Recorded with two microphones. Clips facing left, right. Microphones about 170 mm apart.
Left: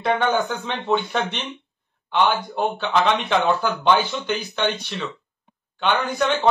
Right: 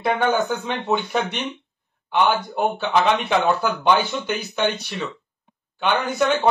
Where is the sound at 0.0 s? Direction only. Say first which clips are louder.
Even; 5° right (ahead or behind).